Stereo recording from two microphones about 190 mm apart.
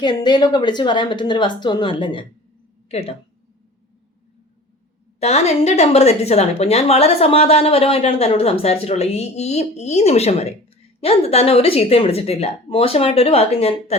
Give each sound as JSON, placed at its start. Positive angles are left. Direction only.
{"t": 0.0, "sound": "a woman's voice", "side_deg": 25}
{"t": 5.2, "sound": "a woman's voice", "side_deg": 35}